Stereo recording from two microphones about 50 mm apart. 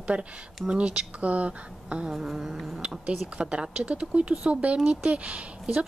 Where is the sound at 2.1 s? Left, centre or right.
Centre.